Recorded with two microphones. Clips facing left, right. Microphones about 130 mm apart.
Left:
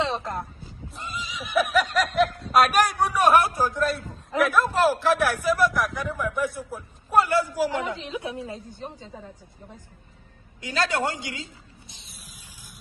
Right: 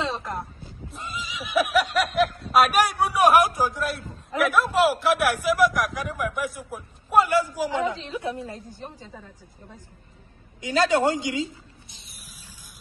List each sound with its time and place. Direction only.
0.6 s a man's voice: centre (ahead or behind); by 7.7 s 15° right (ahead or behind)
7.9 s speech: 20° left (ahead or behind)
10.6 s speech: 20° right (ahead or behind)